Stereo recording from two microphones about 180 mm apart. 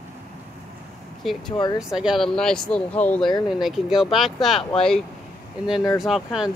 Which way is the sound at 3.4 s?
Centre (ahead or behind).